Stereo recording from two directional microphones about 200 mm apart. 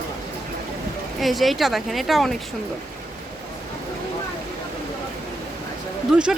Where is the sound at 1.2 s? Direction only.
Centre (ahead or behind).